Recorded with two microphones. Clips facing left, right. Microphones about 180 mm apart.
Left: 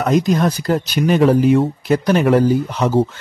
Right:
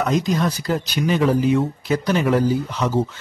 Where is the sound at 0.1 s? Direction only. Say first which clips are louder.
Left 5 dB; 50° left (ahead or behind).